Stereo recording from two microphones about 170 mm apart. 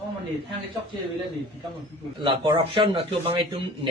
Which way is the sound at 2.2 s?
30° right (ahead or behind).